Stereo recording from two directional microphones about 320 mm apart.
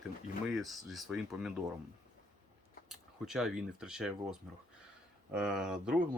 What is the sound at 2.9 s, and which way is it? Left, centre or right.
Speech, centre.